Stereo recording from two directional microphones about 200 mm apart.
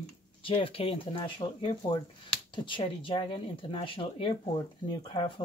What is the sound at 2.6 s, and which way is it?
Speech, 25° left (ahead or behind).